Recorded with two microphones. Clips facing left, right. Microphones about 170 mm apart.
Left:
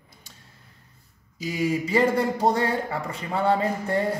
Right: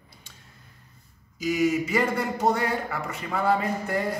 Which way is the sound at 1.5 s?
30° left (ahead or behind).